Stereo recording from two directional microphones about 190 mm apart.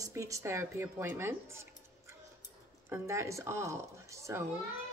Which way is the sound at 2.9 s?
15° right (ahead or behind).